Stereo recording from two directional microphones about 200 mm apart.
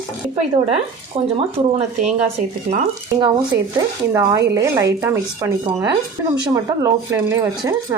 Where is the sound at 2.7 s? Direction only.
35° right (ahead or behind).